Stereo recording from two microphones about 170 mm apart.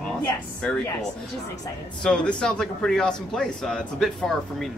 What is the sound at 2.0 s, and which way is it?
Speech, 5° left (ahead or behind).